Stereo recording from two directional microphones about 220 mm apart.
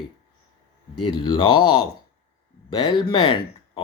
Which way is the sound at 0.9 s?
20° left (ahead or behind).